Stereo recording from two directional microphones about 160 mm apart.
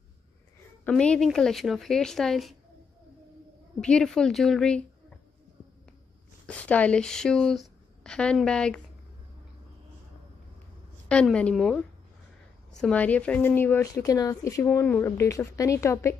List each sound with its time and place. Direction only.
0.8 s speech: 5° left (ahead or behind)
3.8 s speech: 5° left (ahead or behind)
6.4 s speech: 10° left (ahead or behind)
11.1 s speech: 5° left (ahead or behind)
12.8 s speech: 10° left (ahead or behind)